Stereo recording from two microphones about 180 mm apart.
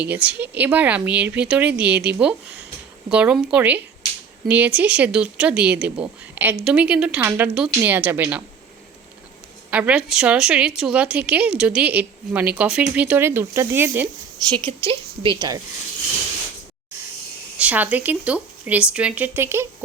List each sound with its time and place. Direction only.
0.0 s a woman's voice: 10° right (ahead or behind)
9.6 s a woman's voice: 10° right (ahead or behind)
14.5 s a woman's voice: 25° right (ahead or behind)
17.6 s a woman's voice: 5° right (ahead or behind)